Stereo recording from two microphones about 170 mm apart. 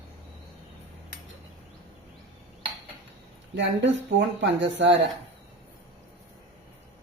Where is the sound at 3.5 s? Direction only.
90° right.